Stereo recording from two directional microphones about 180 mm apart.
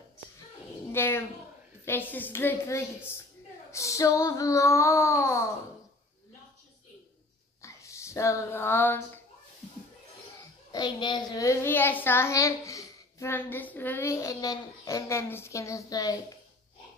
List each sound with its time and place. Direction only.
0.9 s a child's voice: 15° left (ahead or behind)
7.6 s speech: 15° left (ahead or behind)
10.7 s a child's voice: 25° left (ahead or behind)